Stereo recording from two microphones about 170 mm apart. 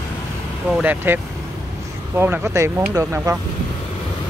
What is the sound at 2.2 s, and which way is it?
Speech, 15° right (ahead or behind).